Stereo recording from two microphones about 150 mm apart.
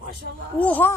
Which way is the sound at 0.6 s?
10° left (ahead or behind).